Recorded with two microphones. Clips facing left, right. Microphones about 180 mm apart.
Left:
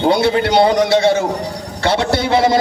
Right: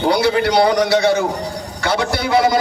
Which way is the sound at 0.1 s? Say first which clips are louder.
Even; 25° left (ahead or behind).